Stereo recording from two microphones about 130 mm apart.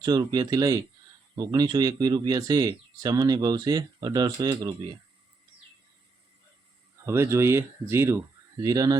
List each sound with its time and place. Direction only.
0.0 s speech: 30° right (ahead or behind)
7.0 s speech: 20° right (ahead or behind)